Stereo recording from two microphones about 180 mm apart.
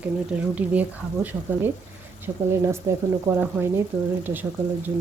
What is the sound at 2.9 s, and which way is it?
Speech, 15° right (ahead or behind).